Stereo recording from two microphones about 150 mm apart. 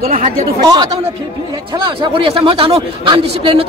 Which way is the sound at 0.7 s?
25° right (ahead or behind).